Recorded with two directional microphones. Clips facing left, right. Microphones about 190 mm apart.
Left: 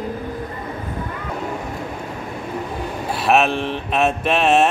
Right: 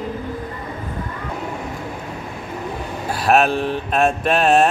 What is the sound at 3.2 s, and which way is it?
Speech, centre (ahead or behind).